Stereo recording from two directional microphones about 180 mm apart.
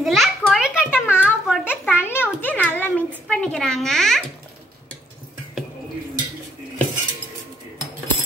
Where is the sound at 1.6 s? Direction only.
10° left (ahead or behind).